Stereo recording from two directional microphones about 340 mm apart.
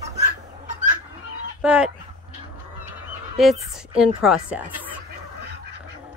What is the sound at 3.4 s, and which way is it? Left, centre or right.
A woman's voice, centre.